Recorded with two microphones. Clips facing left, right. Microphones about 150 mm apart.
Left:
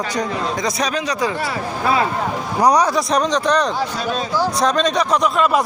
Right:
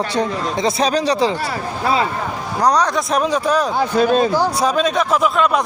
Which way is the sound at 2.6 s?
10° left (ahead or behind).